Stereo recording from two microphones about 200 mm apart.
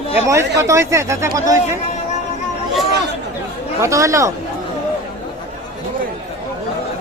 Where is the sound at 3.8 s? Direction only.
15° right (ahead or behind).